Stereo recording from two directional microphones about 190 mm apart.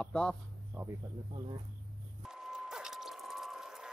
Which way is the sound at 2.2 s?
Centre (ahead or behind).